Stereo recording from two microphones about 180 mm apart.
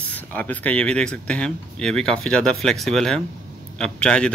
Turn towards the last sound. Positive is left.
turn(degrees=5)  # may be behind; listen again after turning